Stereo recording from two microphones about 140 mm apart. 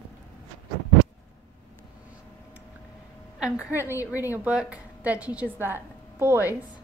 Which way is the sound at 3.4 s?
10° right (ahead or behind).